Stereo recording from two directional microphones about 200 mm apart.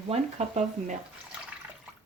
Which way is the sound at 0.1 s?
35° right (ahead or behind).